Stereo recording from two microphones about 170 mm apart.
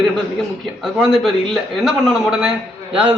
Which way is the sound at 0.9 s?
5° right (ahead or behind).